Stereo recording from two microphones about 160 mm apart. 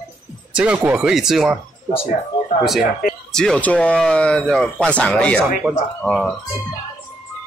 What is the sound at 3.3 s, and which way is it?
A man's voice, 5° left (ahead or behind).